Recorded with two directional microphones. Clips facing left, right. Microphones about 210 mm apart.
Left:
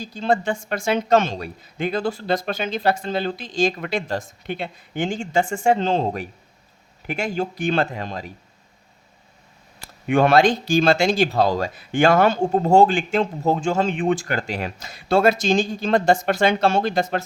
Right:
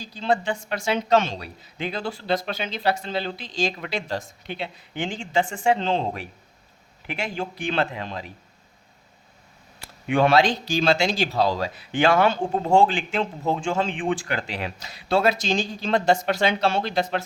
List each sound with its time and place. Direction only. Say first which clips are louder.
0.0 s speech: left 3 dB; 45° left (ahead or behind)
9.8 s speech: left 2 dB; 45° left (ahead or behind)